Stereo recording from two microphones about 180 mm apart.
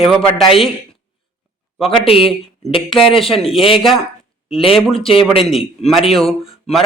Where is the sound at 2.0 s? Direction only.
30° left (ahead or behind).